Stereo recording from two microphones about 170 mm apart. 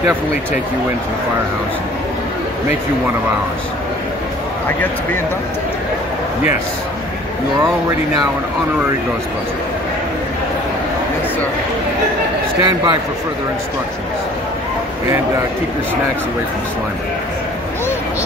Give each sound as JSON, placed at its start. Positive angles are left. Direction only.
{"t": 12.5, "sound": "a man's voice", "side_deg": -25}